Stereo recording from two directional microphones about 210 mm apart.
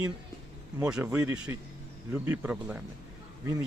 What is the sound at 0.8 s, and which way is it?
Speech, 5° right (ahead or behind).